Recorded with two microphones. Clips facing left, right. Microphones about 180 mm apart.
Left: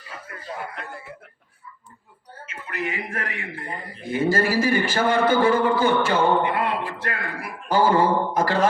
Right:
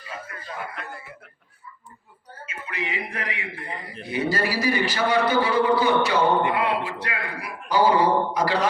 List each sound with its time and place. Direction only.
2.6 s a man's voice: 45° left (ahead or behind)